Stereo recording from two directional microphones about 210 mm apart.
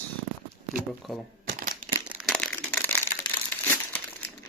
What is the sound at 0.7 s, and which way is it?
Speech, centre (ahead or behind).